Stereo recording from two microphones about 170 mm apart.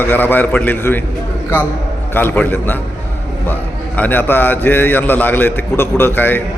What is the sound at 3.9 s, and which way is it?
A man's voice, 10° left (ahead or behind).